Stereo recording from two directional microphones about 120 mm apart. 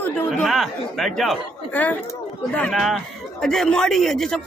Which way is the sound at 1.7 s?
15° left (ahead or behind).